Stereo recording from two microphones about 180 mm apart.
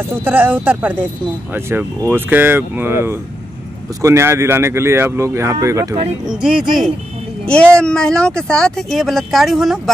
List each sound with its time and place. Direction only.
0.2 s speech: 10° right (ahead or behind)
6.2 s speech: 5° right (ahead or behind)